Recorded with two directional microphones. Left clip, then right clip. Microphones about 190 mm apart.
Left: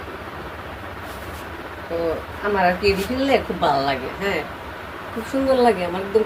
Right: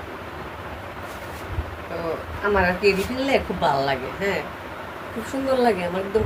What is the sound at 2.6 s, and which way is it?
A woman's voice, 5° right (ahead or behind).